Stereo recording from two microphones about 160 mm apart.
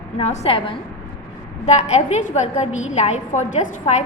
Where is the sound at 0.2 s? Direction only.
40° left (ahead or behind).